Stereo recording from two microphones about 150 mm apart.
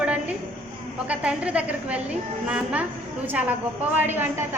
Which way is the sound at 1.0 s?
10° right (ahead or behind).